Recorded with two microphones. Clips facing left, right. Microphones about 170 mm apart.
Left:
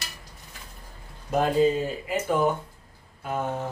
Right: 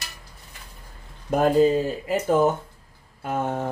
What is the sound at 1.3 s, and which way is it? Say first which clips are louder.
Speech: right 2 dB; 55° right (ahead or behind).